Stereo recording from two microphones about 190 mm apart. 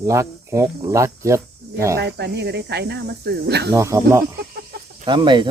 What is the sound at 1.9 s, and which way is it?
Speech, 60° right (ahead or behind).